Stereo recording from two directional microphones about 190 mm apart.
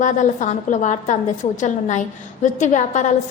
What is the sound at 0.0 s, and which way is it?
A woman's voice, 40° left (ahead or behind).